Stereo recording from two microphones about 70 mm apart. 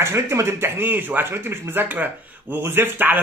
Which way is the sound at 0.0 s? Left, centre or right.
Right.